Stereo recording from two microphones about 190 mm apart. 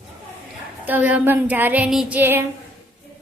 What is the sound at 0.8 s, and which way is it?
Female singing, 10° right (ahead or behind).